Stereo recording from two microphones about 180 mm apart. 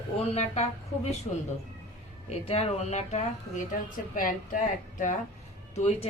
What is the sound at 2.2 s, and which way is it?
Speech, 35° left (ahead or behind).